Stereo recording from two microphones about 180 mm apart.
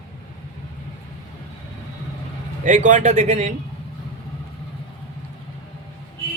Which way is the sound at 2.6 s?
45° right (ahead or behind).